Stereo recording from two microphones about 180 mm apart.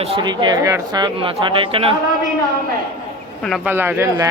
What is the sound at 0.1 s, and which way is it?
Speech, 25° right (ahead or behind).